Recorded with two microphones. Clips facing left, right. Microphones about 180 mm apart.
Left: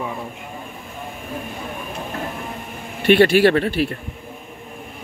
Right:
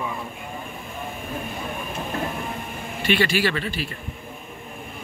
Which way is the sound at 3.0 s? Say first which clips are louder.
Left 9 dB; 60° left (ahead or behind).